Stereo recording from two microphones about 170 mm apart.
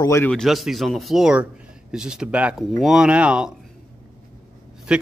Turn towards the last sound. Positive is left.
turn(degrees=-5)  # may be behind; listen again after turning